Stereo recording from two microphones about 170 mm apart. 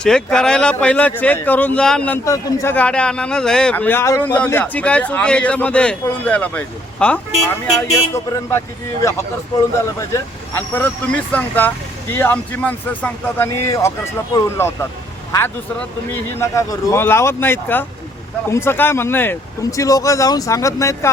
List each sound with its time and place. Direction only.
0.0 s a man's voice: 5° left (ahead or behind)
2.2 s a man's voice: 20° left (ahead or behind)
2.7 s a man's voice: 5° left (ahead or behind)
9.8 s a man's voice: 15° left (ahead or behind)